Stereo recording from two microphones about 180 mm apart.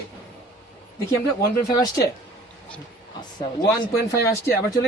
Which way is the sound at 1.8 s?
20° left (ahead or behind).